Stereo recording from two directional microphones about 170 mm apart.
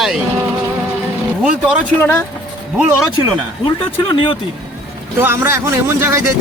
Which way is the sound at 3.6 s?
25° left (ahead or behind).